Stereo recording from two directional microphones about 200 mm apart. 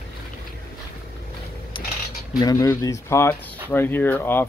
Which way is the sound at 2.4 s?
15° left (ahead or behind).